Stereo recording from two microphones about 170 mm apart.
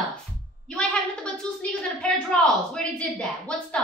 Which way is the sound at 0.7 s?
5° left (ahead or behind).